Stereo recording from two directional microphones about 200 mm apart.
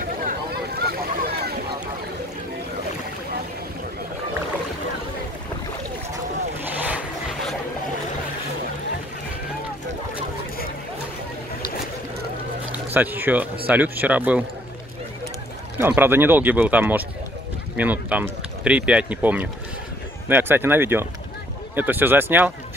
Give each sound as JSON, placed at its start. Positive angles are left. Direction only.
{"t": 0.2, "sound": "boat", "side_deg": -45}
{"t": 12.9, "sound": "speech", "side_deg": -10}
{"t": 15.8, "sound": "speech", "side_deg": -10}